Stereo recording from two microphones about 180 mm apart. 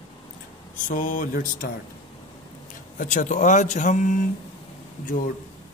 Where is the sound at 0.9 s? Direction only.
45° left (ahead or behind).